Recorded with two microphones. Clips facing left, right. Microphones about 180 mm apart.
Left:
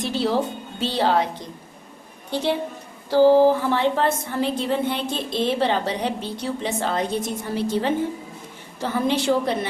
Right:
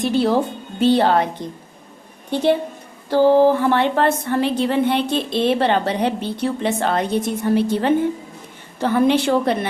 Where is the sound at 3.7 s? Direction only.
65° right (ahead or behind).